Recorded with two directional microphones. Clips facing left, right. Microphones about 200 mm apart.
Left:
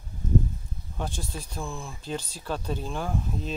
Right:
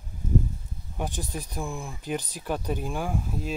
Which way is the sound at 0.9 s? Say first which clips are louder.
Right 2 dB; 15° right (ahead or behind).